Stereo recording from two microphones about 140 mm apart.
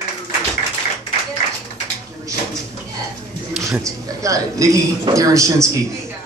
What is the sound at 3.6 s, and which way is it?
A man's voice, 20° right (ahead or behind).